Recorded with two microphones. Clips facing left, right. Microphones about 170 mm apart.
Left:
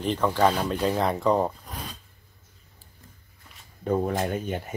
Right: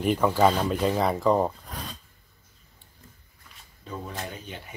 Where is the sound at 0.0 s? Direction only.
10° right (ahead or behind).